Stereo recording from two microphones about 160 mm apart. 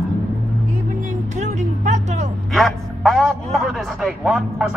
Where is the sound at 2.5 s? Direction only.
Centre (ahead or behind).